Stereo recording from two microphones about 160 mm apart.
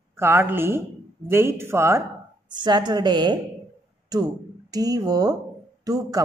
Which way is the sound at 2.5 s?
25° right (ahead or behind).